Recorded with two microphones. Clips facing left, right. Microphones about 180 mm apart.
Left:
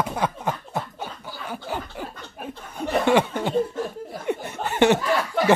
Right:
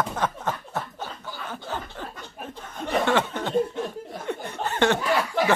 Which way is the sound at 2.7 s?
10° left (ahead or behind).